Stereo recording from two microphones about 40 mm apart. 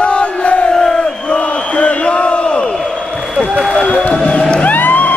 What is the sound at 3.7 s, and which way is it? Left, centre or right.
Run, left.